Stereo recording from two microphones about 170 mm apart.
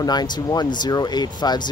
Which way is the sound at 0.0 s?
25° left (ahead or behind).